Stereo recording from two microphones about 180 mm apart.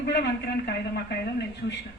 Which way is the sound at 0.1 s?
70° left (ahead or behind).